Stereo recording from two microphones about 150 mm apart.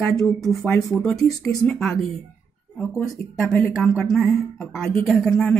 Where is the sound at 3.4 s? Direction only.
15° left (ahead or behind).